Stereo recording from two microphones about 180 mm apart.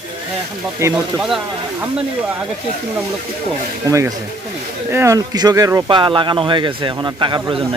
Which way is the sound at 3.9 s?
15° right (ahead or behind).